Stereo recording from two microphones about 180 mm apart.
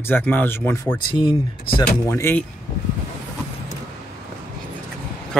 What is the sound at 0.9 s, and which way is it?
Speech, 25° left (ahead or behind).